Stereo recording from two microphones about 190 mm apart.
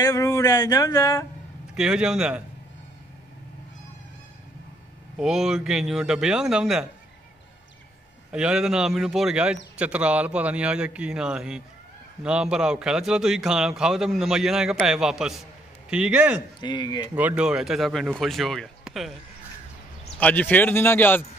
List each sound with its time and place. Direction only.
0.0 s speech: 15° left (ahead or behind)
1.8 s a man's voice: 5° right (ahead or behind)
5.2 s a man's voice: centre (ahead or behind)
8.3 s a man's voice: 5° right (ahead or behind)
16.6 s speech: 25° left (ahead or behind)
17.2 s a man's voice: 5° right (ahead or behind)
20.2 s speech: 10° left (ahead or behind)